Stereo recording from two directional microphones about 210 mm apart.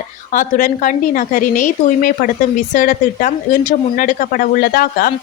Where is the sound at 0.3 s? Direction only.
40° left (ahead or behind).